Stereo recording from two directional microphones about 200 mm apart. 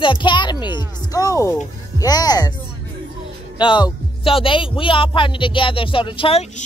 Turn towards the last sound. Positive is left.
turn(degrees=25)  # may be behind; listen again after turning